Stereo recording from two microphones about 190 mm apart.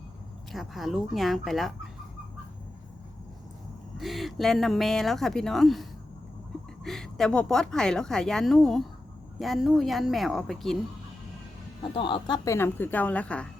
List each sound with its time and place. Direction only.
0.5 s a woman's voice: centre (ahead or behind)
3.9 s a woman's voice: centre (ahead or behind)
6.8 s a woman's voice: centre (ahead or behind)
11.8 s speech: 25° left (ahead or behind)
12.5 s a woman's voice: 10° left (ahead or behind)